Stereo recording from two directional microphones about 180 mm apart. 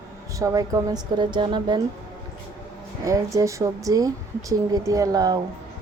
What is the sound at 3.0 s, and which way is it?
Speech, 20° right (ahead or behind).